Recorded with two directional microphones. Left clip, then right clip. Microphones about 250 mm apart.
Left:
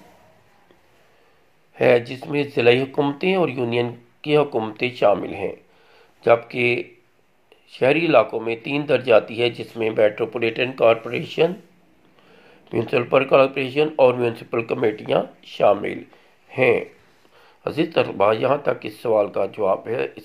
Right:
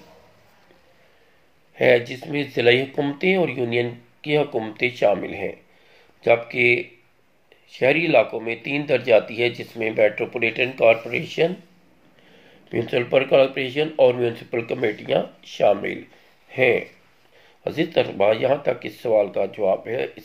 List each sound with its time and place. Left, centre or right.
1.8 s speech: centre
12.6 s speech: centre
17.9 s speech: centre